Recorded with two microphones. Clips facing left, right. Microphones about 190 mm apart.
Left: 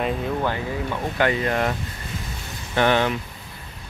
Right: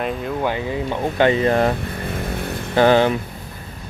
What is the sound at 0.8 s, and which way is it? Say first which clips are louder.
Speech: right 6 dB; 25° right (ahead or behind).